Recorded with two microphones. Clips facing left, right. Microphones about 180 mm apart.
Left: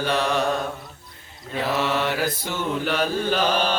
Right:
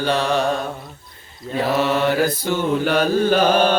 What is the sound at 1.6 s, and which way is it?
Mantra, 40° right (ahead or behind).